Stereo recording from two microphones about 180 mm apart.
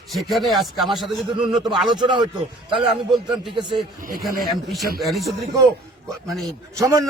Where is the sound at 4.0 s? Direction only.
50° right (ahead or behind).